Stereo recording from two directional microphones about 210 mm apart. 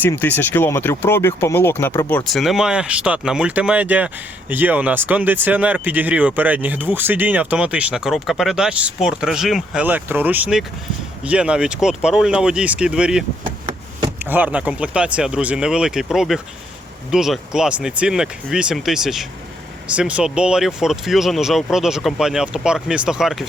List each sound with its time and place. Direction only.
0.0 s speech: 10° left (ahead or behind)
13.4 s chop: 20° right (ahead or behind)
14.3 s speech: 10° right (ahead or behind)